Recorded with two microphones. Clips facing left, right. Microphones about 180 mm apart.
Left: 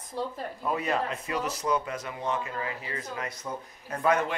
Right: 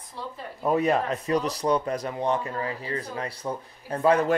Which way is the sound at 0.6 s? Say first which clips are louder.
Right 6 dB; 35° right (ahead or behind).